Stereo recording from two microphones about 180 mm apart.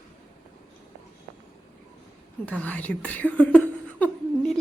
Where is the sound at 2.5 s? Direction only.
10° left (ahead or behind).